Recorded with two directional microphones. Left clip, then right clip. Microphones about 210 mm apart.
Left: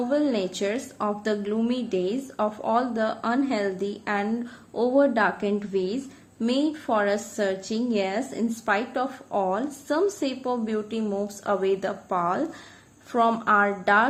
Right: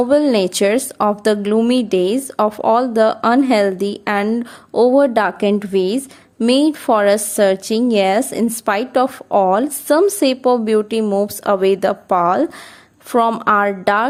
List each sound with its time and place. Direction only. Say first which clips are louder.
0.1 s a woman's voice: right 11 dB; 50° right (ahead or behind)